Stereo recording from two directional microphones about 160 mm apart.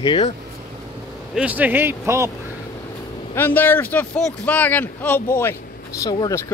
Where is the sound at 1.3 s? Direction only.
10° right (ahead or behind).